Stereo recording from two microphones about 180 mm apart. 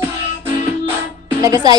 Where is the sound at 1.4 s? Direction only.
20° right (ahead or behind).